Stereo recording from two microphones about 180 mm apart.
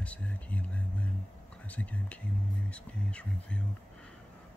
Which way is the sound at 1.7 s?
10° left (ahead or behind).